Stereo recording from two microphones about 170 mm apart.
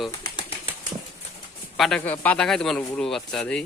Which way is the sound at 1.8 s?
5° left (ahead or behind).